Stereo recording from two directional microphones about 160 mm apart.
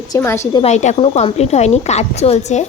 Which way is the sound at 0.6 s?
45° left (ahead or behind).